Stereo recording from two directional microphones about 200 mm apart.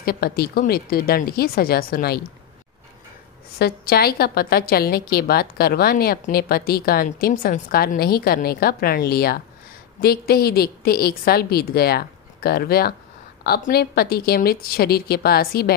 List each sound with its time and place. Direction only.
0.0 s a woman's voice: 50° left (ahead or behind)
3.5 s a woman's voice: 50° left (ahead or behind)